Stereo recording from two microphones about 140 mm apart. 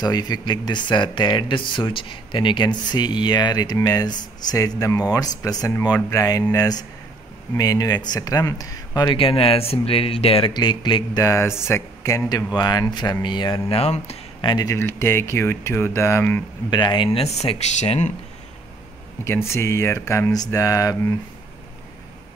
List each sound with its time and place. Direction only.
0.0 s speech: 30° left (ahead or behind)
9.1 s speech: 40° left (ahead or behind)
11.2 s speech: 20° left (ahead or behind); by 14.5 s 50° left (ahead or behind)
14.5 s speech: 25° left (ahead or behind)
16.7 s speech: 35° left (ahead or behind); by 18.1 s 50° left (ahead or behind)
19.2 s speech: 20° left (ahead or behind)